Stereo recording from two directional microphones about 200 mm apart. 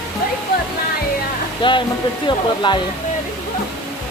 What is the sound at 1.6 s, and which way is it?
Speech, 25° left (ahead or behind).